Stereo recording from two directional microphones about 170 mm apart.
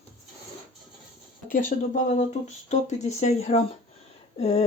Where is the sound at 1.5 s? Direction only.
50° left (ahead or behind).